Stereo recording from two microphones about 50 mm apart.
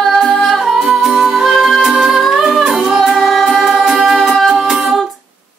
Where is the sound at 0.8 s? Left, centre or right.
Centre.